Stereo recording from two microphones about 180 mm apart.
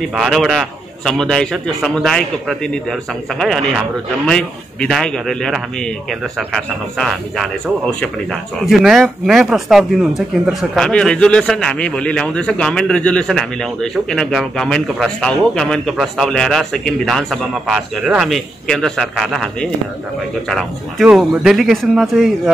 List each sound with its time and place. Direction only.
0.1 s speech: centre (ahead or behind)